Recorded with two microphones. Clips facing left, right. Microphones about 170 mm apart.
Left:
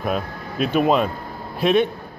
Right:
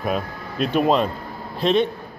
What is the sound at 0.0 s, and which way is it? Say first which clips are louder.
A man's voice: even; centre (ahead or behind).